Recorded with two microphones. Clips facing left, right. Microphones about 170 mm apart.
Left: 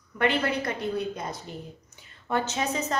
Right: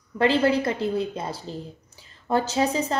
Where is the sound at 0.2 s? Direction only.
30° right (ahead or behind).